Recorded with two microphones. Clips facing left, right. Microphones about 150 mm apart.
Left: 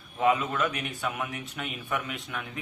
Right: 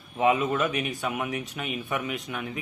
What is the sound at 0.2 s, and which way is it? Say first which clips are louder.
Speech: right 2 dB; 20° right (ahead or behind).